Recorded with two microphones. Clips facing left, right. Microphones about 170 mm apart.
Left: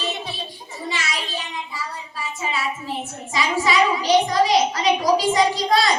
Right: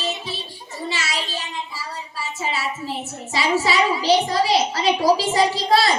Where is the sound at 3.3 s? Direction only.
30° right (ahead or behind).